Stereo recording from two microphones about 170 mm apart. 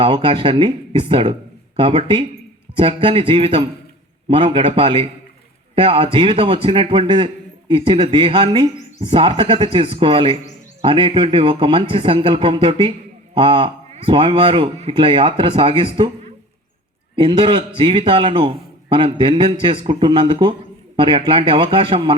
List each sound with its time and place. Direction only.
0.0 s a man's voice: 30° right (ahead or behind)
17.2 s a man's voice: 30° right (ahead or behind)